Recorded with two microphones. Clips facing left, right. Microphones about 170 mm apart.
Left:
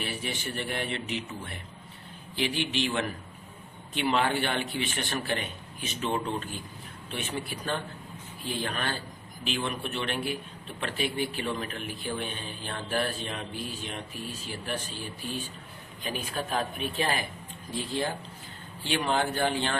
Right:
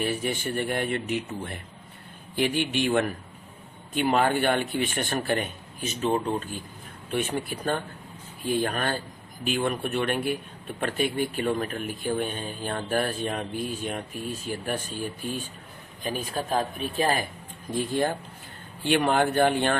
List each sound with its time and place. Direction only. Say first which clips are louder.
0.0 s speech: right 7 dB; 45° right (ahead or behind)
16.0 s speech: right 4 dB; 35° right (ahead or behind)
17.7 s speech: right 5 dB; 50° right (ahead or behind)